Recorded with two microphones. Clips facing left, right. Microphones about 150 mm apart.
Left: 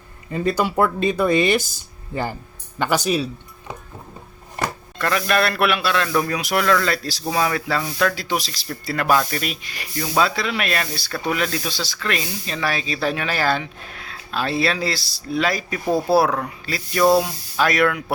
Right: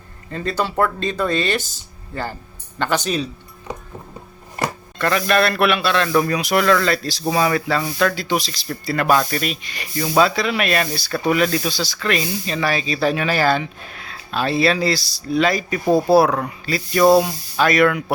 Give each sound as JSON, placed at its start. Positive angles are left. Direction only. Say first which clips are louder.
{"t": 0.3, "sound": "speech", "louder": "left 2 dB", "side_deg": 10}
{"t": 4.9, "sound": "speech", "louder": "right 2 dB", "side_deg": 0}
{"t": 15.9, "sound": "speech", "louder": "right 4 dB", "side_deg": -25}
{"t": 16.1, "sound": "speech", "louder": "right 3 dB", "side_deg": 0}